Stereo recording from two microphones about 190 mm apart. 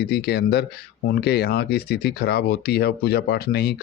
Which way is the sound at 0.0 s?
55° left (ahead or behind).